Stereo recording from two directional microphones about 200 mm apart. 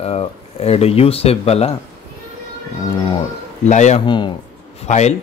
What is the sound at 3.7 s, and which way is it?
Speech, 35° left (ahead or behind).